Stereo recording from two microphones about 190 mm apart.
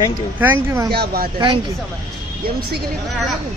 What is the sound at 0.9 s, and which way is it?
Speech, 55° right (ahead or behind).